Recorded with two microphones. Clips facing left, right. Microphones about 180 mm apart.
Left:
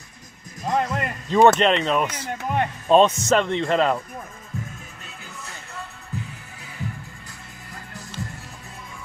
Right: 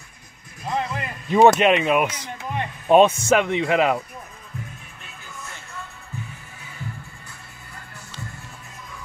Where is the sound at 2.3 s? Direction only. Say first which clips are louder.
Left 5 dB; 60° left (ahead or behind).